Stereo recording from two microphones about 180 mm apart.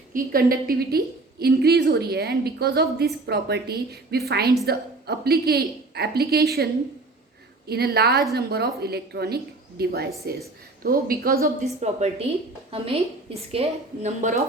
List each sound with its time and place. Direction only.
0.1 s a woman's voice: 50° right (ahead or behind)
7.7 s a woman's voice: 60° right (ahead or behind)
11.8 s a woman's voice: 40° right (ahead or behind)